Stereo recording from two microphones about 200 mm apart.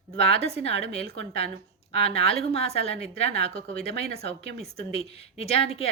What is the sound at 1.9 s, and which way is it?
A woman's voice, 30° left (ahead or behind).